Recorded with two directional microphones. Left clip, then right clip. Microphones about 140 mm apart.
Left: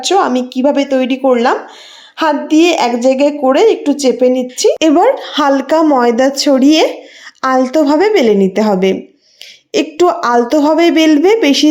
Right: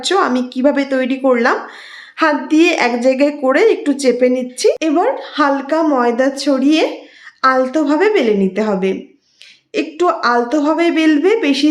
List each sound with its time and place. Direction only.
0.0 s speech: 15° left (ahead or behind)
4.8 s a woman's voice: 50° left (ahead or behind)